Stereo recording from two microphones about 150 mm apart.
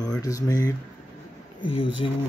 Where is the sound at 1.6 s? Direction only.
35° left (ahead or behind).